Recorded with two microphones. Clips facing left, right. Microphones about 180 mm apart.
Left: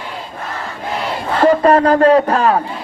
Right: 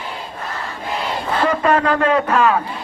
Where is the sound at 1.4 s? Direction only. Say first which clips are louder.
Left 7 dB; 35° left (ahead or behind).